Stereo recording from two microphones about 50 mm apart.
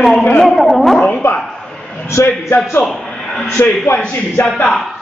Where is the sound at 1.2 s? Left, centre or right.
Left.